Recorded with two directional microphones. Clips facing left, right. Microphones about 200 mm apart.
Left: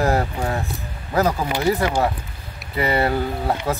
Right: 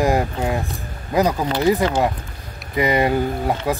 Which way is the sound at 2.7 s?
15° right (ahead or behind).